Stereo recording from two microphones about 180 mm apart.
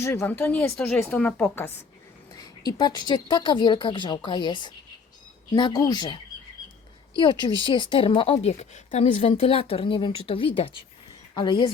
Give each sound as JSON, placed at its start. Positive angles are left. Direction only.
{"t": 0.0, "sound": "a woman's voice", "side_deg": 15}
{"t": 2.3, "sound": "a woman's voice", "side_deg": 20}
{"t": 7.2, "sound": "a woman's voice", "side_deg": 25}